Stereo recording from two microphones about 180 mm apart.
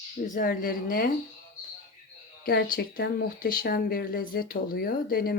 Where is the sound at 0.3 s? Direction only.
50° left (ahead or behind).